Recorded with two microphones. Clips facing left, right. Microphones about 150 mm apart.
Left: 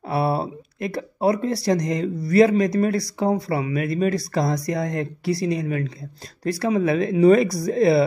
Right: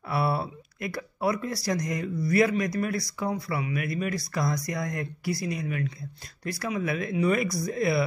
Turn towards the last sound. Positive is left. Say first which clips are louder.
# left 8 dB
turn(degrees=30)  # may be behind; listen again after turning